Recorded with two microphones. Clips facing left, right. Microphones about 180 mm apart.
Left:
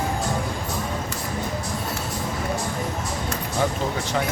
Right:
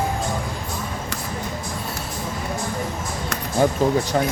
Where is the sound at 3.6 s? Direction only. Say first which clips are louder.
Right 6 dB; 40° right (ahead or behind).